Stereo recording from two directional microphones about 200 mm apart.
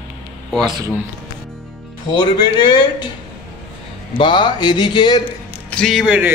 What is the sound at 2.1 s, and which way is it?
Speech, 20° left (ahead or behind).